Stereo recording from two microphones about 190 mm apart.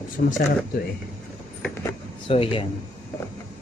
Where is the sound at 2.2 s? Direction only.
30° left (ahead or behind).